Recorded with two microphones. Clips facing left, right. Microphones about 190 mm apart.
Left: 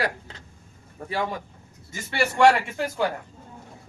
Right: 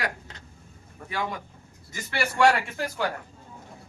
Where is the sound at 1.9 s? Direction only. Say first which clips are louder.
Left 4 dB; 25° left (ahead or behind).